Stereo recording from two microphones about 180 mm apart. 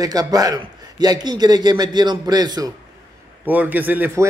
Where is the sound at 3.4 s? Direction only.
10° right (ahead or behind).